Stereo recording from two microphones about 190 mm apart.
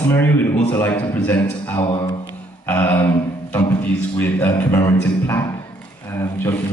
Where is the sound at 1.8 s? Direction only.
25° left (ahead or behind).